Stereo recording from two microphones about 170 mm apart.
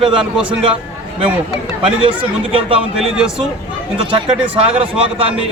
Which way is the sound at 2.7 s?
30° right (ahead or behind).